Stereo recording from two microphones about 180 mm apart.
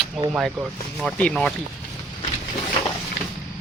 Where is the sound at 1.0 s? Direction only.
5° left (ahead or behind).